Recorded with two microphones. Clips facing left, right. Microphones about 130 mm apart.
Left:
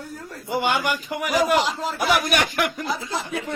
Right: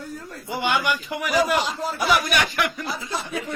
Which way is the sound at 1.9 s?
50° left (ahead or behind).